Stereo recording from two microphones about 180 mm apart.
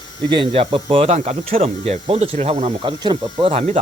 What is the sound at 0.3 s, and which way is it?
Speech, 30° right (ahead or behind).